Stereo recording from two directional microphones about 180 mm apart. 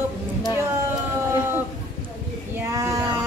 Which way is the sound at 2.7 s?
15° right (ahead or behind).